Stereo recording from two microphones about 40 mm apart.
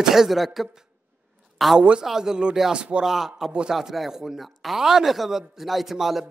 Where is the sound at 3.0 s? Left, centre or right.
Centre.